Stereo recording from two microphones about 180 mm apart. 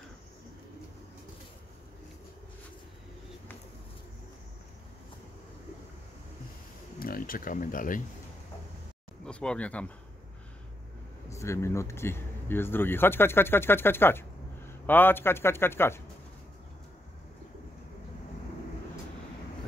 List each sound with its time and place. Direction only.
7.0 s speech: 55° left (ahead or behind)
9.2 s speech: 5° left (ahead or behind)
11.2 s speech: 15° left (ahead or behind)